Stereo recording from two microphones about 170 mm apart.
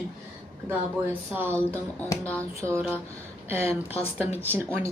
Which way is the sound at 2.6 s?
15° right (ahead or behind).